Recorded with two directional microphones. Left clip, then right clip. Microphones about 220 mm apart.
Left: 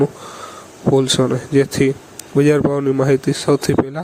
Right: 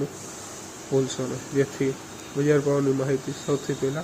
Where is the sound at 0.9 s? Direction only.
45° left (ahead or behind).